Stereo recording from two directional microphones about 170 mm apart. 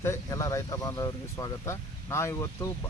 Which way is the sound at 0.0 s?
15° left (ahead or behind).